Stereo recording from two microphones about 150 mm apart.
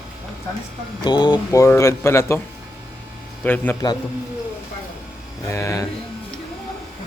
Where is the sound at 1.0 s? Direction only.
30° left (ahead or behind).